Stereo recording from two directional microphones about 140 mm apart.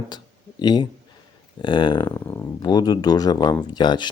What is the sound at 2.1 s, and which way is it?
Speech, 25° left (ahead or behind).